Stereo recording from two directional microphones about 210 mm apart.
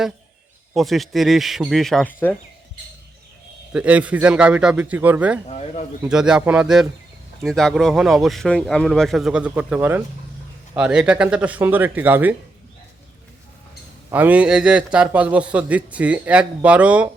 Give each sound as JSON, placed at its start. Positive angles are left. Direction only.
{"t": 0.7, "sound": "speech", "side_deg": 0}
{"t": 3.7, "sound": "a man's voice", "side_deg": -5}
{"t": 5.5, "sound": "speech", "side_deg": 30}
{"t": 6.0, "sound": "a man's voice", "side_deg": -5}
{"t": 14.1, "sound": "a man's voice", "side_deg": -10}